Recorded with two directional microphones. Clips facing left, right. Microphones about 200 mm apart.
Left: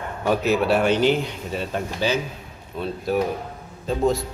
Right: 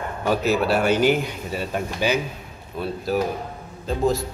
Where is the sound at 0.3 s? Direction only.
Centre (ahead or behind).